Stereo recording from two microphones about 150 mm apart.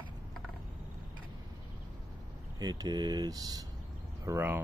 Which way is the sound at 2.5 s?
25° right (ahead or behind).